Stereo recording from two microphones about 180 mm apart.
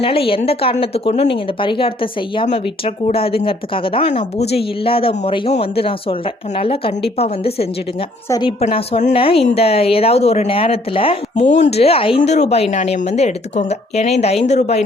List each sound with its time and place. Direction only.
0.0 s a woman's voice: 30° left (ahead or behind)
8.6 s speech: 35° left (ahead or behind)